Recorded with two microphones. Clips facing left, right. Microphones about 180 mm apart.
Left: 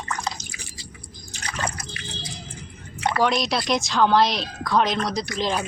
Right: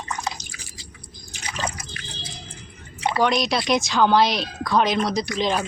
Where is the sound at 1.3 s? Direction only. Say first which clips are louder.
Even; 15° right (ahead or behind).